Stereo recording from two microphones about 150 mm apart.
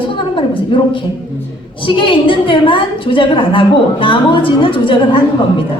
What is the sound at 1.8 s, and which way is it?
A woman's voice, 35° left (ahead or behind).